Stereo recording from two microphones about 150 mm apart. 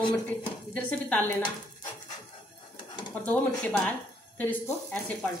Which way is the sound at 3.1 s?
10° left (ahead or behind).